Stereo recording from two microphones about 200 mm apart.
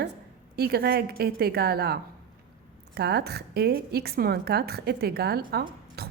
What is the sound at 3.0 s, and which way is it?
A woman's voice, 55° right (ahead or behind).